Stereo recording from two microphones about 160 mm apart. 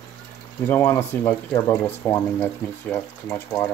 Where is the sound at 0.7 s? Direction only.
15° left (ahead or behind).